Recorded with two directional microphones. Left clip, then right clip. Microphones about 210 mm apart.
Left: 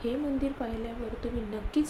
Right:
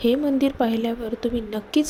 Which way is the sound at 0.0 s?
40° right (ahead or behind).